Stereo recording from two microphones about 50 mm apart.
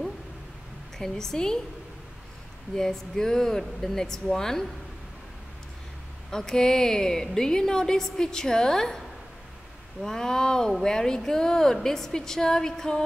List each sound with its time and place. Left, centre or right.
0.9 s a woman's voice: centre
2.7 s a woman's voice: centre
6.3 s a woman's voice: centre
10.0 s a woman's voice: centre